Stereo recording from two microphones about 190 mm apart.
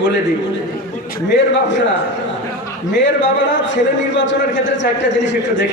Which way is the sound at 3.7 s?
70° left (ahead or behind).